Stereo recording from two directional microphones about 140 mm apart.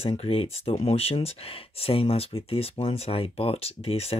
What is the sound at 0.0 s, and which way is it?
Speech, 45° left (ahead or behind).